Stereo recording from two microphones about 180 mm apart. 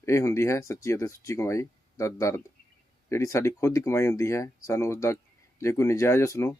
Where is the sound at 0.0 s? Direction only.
15° left (ahead or behind).